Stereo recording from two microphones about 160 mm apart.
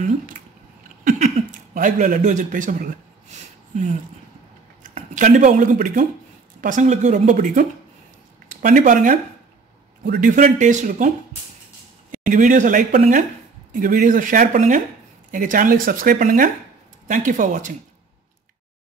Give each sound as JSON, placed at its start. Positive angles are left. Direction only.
{"t": 1.0, "sound": "a sound", "side_deg": -50}
{"t": 4.9, "sound": "speech", "side_deg": -55}
{"t": 10.0, "sound": "speech", "side_deg": -65}
{"t": 12.1, "sound": "speech", "side_deg": -55}